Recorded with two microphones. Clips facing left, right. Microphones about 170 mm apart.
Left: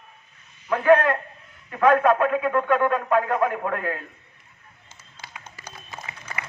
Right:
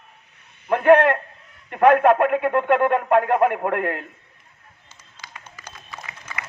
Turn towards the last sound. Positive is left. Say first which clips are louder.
# even
turn(degrees=20)  # may be behind; listen again after turning